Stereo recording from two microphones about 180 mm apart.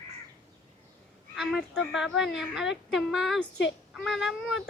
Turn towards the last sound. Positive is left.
turn(degrees=0)  # may be behind; listen again after turning